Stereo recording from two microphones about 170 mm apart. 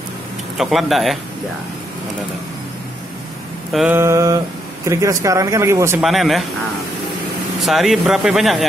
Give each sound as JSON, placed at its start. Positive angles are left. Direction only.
{"t": 0.6, "sound": "speech", "side_deg": 0}
{"t": 3.7, "sound": "speech", "side_deg": -10}
{"t": 5.9, "sound": "speech", "side_deg": 0}
{"t": 7.6, "sound": "speech", "side_deg": 0}